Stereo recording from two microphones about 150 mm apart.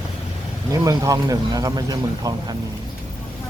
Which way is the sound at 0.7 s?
20° right (ahead or behind).